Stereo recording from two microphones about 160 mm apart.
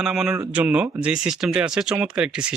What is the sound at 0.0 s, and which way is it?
Speech, 5° right (ahead or behind).